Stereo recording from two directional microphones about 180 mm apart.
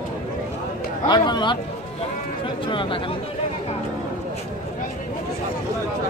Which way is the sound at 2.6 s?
30° left (ahead or behind).